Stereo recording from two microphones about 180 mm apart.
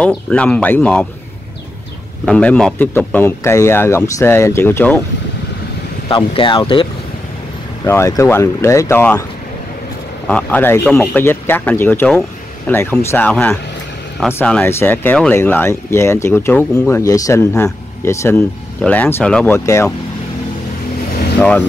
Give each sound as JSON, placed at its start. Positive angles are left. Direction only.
{"t": 0.0, "sound": "speech", "side_deg": 5}
{"t": 2.2, "sound": "speech", "side_deg": 5}
{"t": 6.0, "sound": "speech", "side_deg": 25}
{"t": 7.8, "sound": "speech", "side_deg": 15}
{"t": 10.2, "sound": "speech", "side_deg": 5}
{"t": 21.4, "sound": "speech", "side_deg": 5}